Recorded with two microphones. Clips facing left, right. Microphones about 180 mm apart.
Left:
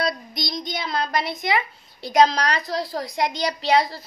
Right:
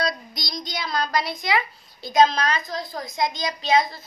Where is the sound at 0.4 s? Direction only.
25° left (ahead or behind).